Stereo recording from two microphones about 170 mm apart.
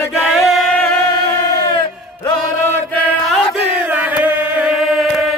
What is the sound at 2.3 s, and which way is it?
Chant, 15° left (ahead or behind).